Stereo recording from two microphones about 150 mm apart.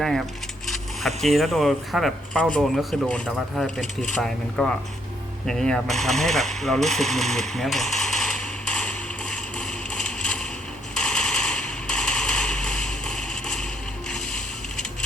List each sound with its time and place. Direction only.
0.0 s speech: 5° left (ahead or behind)
9.3 s a sound: 5° left (ahead or behind)
14.1 s boat: 5° left (ahead or behind)